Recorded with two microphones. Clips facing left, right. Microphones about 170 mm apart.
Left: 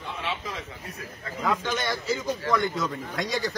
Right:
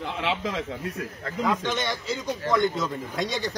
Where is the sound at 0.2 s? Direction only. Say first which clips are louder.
Right 6 dB; 90° right.